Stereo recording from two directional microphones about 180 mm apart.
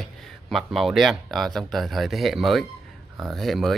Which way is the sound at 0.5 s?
Centre (ahead or behind).